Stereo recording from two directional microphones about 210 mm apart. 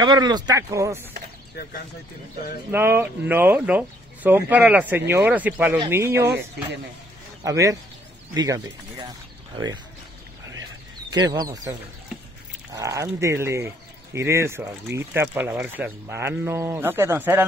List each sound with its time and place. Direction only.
0.0 s speech: 20° right (ahead or behind)
2.7 s speech: 10° right (ahead or behind)
7.4 s speech: 15° right (ahead or behind)
11.1 s speech: 20° right (ahead or behind)
12.7 s speech: 15° right (ahead or behind)